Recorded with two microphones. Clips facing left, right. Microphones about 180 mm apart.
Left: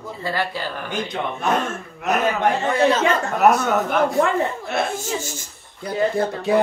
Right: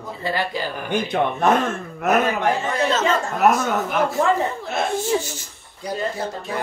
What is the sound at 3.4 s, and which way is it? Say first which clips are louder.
Speech: left 2 dB; centre (ahead or behind).